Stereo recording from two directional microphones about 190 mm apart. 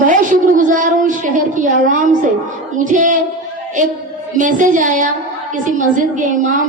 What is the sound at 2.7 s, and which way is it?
Speech, 40° right (ahead or behind).